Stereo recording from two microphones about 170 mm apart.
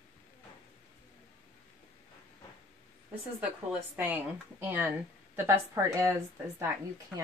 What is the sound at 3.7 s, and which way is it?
Speech, 10° right (ahead or behind).